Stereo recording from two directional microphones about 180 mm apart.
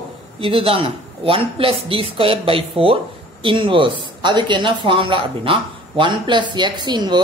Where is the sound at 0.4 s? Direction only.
30° right (ahead or behind).